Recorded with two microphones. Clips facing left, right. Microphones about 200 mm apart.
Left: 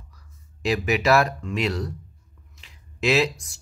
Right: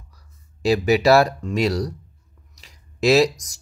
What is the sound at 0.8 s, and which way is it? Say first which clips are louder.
Speech: right 5 dB; 35° right (ahead or behind).